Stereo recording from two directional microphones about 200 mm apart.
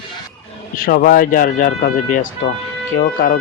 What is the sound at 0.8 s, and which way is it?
Speech, 45° left (ahead or behind).